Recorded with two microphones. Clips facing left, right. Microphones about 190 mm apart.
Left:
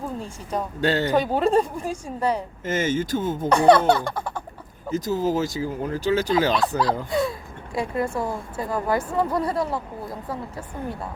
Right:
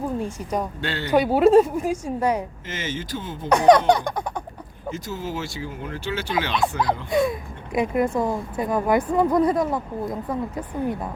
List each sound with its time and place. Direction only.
0.8 s speech: 40° left (ahead or behind)
1.1 s speech: 10° right (ahead or behind)
2.6 s speech: 45° left (ahead or behind)
3.5 s speech: 15° right (ahead or behind)
4.9 s speech: 40° left (ahead or behind)
6.6 s speech: 20° right (ahead or behind)